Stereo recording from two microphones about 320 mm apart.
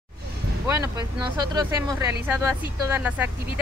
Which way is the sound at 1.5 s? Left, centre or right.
Centre.